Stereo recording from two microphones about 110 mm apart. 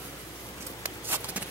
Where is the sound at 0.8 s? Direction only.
15° right (ahead or behind).